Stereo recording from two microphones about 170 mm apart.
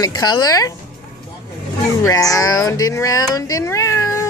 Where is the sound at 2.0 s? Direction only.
20° left (ahead or behind).